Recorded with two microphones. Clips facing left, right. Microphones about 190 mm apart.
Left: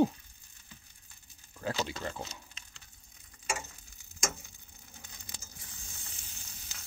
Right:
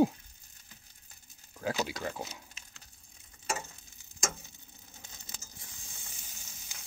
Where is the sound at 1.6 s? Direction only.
10° right (ahead or behind).